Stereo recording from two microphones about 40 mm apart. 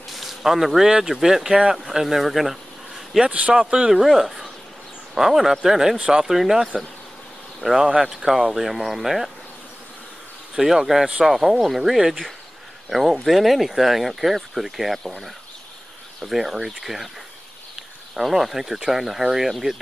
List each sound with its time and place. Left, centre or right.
0.1 s a sound: centre
1.0 s speech: centre
3.3 s speech: right
3.5 s speech: right
3.9 s speech: centre
6.2 s speech: centre
10.5 s speech: centre
13.2 s speech: centre
17.7 s cricket: centre
18.8 s speech: centre